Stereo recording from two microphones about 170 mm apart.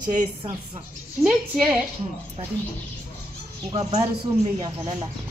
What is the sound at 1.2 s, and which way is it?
Speech, 5° right (ahead or behind).